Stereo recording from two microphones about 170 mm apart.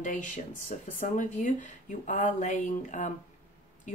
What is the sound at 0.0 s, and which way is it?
Speech, 50° left (ahead or behind).